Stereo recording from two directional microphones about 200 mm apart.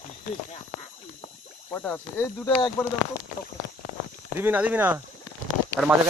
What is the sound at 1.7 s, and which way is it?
Speech, 10° left (ahead or behind).